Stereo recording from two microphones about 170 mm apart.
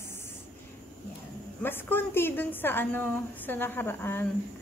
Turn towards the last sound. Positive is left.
turn(degrees=15)  # may be behind; listen again after turning